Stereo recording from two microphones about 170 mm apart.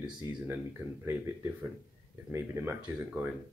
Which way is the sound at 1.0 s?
15° right (ahead or behind).